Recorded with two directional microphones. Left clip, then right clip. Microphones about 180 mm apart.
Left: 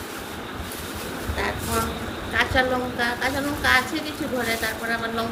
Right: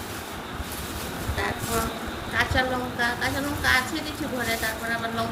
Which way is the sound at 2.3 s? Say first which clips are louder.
Left 3 dB; 15° right (ahead or behind).